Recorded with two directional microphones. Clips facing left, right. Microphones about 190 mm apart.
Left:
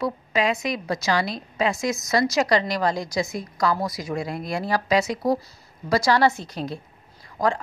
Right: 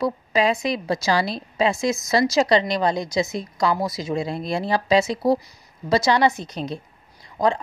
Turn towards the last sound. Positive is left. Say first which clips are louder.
# right 2 dB
turn(degrees=-20)  # may be behind; listen again after turning